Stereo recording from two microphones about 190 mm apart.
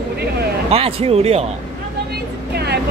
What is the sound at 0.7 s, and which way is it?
Speech, 30° right (ahead or behind).